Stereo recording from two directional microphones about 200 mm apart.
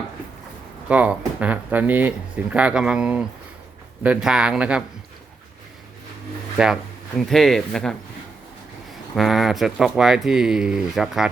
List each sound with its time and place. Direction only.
0.9 s speech: 5° right (ahead or behind)
7.2 s speech: centre (ahead or behind)
9.1 s speech: centre (ahead or behind)